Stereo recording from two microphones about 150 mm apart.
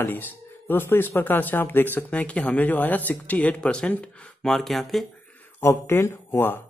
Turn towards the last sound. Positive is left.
turn(degrees=15)  # may be behind; listen again after turning